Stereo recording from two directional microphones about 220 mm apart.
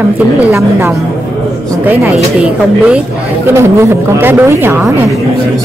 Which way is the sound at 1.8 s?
5° right (ahead or behind).